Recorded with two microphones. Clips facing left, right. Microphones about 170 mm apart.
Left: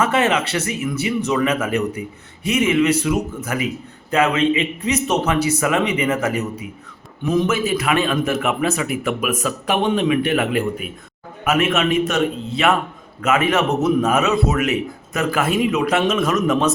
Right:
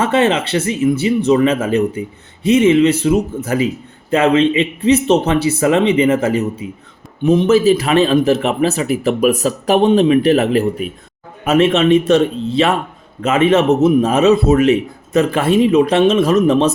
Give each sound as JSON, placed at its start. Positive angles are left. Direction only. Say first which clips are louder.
{"t": 0.0, "sound": "a man's voice", "louder": "right 4 dB", "side_deg": -30}